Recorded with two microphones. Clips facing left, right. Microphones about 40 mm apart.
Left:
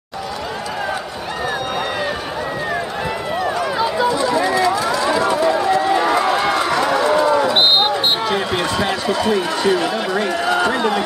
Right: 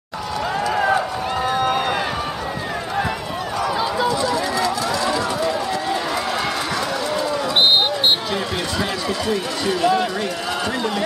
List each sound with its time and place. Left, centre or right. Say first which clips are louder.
3.8 s run: left 5 dB; centre
8.3 s a sound: left 4 dB; centre
10.1 s speech: left 6 dB; centre